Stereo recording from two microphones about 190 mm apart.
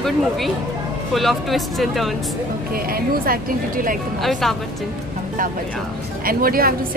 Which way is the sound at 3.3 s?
45° right (ahead or behind).